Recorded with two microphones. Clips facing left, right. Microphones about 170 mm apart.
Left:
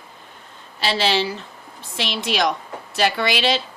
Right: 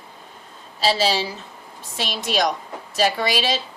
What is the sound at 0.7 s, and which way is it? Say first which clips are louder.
A woman's voice: even; 60° left (ahead or behind).